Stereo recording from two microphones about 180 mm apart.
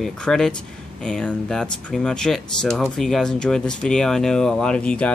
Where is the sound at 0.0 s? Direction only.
Centre (ahead or behind).